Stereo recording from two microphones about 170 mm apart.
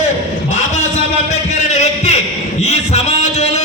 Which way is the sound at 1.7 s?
40° left (ahead or behind).